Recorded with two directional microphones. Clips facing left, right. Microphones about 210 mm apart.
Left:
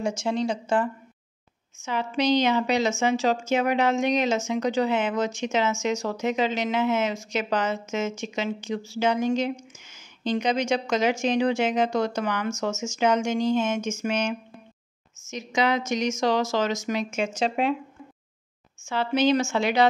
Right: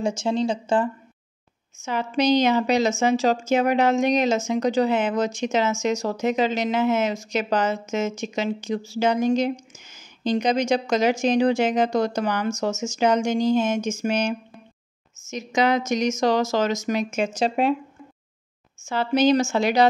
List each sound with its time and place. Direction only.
0.0 s speech: 25° right (ahead or behind)
1.9 s a woman's voice: 40° right (ahead or behind)
18.9 s a woman's voice: 40° right (ahead or behind)